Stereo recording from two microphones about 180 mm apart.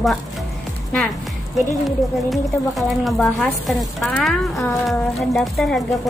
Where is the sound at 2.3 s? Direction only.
Centre (ahead or behind).